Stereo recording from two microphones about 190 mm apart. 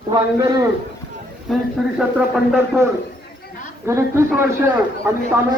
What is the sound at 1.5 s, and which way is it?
A man's voice, centre (ahead or behind).